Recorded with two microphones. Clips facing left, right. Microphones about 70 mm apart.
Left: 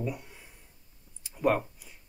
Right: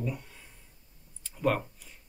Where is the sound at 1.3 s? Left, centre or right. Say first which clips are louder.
Left 2 dB; centre.